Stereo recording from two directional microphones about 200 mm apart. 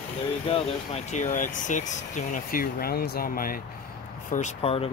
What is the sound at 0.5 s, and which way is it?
Speech, 30° left (ahead or behind).